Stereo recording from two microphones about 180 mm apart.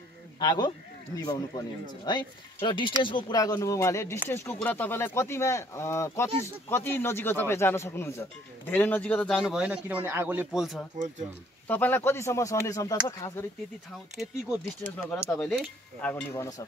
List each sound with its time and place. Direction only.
0.4 s speech: 25° left (ahead or behind); by 9.4 s 5° left (ahead or behind)
9.4 s a man's voice: 5° right (ahead or behind)
11.6 s speech: 10° left (ahead or behind)
14.2 s speech: centre (ahead or behind); by 16.6 s 15° left (ahead or behind)